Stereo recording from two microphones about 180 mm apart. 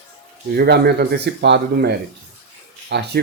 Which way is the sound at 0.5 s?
60° right (ahead or behind).